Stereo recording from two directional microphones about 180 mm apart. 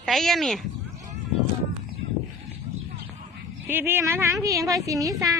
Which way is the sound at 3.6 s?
10° right (ahead or behind).